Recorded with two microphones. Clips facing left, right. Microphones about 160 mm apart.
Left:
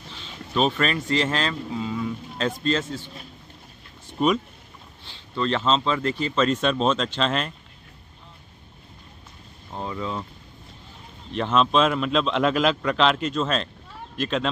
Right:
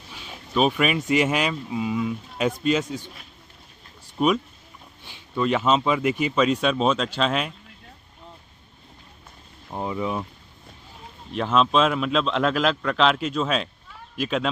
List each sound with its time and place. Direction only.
0.1 s speech: 10° right (ahead or behind)
4.2 s a man's voice: 5° right (ahead or behind)
9.7 s speech: 15° right (ahead or behind)
11.3 s a man's voice: centre (ahead or behind)